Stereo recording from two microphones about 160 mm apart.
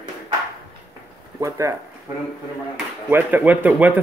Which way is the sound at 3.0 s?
10° right (ahead or behind).